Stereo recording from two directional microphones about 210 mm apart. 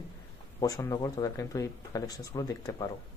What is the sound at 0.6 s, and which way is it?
Speech, 15° left (ahead or behind).